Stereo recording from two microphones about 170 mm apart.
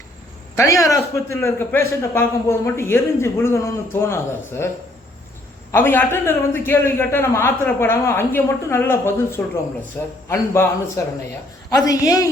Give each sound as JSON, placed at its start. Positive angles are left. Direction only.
{"t": 0.5, "sound": "a man's voice", "side_deg": 20}
{"t": 5.7, "sound": "a man's voice", "side_deg": 10}